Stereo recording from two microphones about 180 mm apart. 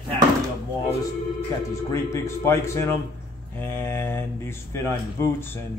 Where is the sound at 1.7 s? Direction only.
15° left (ahead or behind).